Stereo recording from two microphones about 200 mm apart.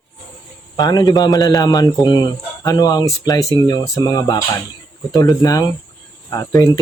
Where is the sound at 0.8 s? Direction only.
20° left (ahead or behind).